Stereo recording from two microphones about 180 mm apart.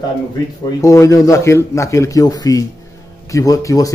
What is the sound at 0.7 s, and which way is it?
A man's voice, 15° left (ahead or behind).